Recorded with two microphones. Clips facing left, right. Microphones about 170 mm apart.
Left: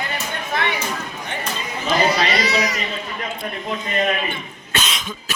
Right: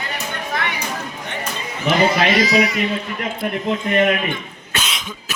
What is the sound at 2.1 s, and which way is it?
Speech, 45° right (ahead or behind).